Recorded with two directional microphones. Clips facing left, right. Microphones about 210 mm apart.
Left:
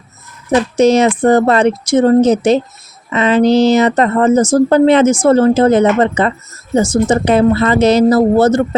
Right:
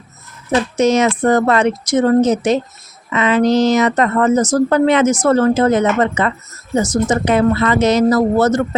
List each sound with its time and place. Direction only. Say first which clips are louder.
0.5 s a woman's voice: left 4 dB; 30° left (ahead or behind)